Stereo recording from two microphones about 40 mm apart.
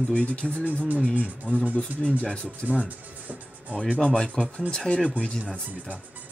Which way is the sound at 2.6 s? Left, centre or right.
Right.